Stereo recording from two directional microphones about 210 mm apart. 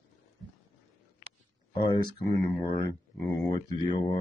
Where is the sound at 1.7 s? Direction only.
20° left (ahead or behind).